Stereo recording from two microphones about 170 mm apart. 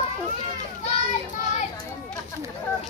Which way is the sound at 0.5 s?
40° left (ahead or behind).